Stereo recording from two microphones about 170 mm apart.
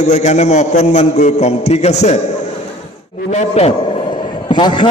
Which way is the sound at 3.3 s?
40° left (ahead or behind).